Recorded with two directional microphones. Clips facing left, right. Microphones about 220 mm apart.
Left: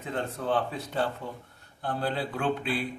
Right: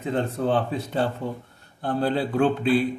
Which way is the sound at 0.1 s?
25° right (ahead or behind).